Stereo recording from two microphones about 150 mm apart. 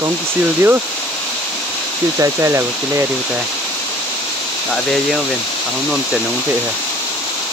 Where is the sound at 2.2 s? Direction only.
15° right (ahead or behind).